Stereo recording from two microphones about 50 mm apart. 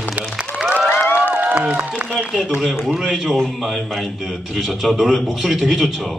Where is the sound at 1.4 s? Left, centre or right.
Right.